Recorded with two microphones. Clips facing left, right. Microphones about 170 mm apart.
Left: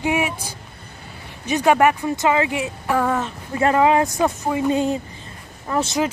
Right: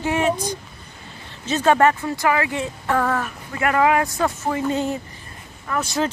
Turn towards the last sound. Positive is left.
turn(degrees=25)  # may be behind; listen again after turning